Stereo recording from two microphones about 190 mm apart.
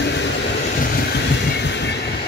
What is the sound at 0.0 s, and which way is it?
Train, 65° left (ahead or behind).